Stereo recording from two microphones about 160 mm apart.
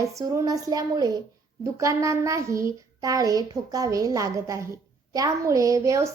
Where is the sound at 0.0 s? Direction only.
20° right (ahead or behind).